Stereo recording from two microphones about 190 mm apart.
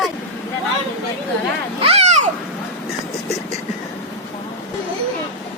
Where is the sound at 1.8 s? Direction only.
35° right (ahead or behind).